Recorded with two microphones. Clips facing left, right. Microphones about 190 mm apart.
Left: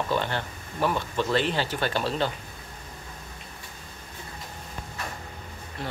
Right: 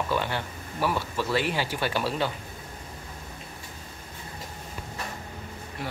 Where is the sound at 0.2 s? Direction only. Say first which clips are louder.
Even; 10° right (ahead or behind).